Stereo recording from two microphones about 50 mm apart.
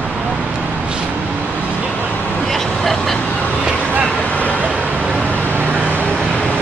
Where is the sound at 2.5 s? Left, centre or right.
Centre.